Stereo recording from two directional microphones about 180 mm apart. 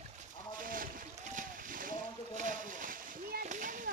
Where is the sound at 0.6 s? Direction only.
50° right (ahead or behind).